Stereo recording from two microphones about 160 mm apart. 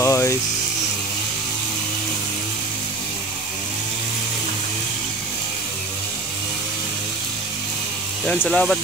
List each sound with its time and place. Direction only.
0.0 s music: 20° left (ahead or behind)
8.3 s speech: 5° left (ahead or behind)